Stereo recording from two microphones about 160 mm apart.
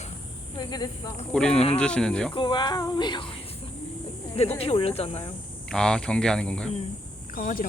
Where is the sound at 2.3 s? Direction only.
30° left (ahead or behind).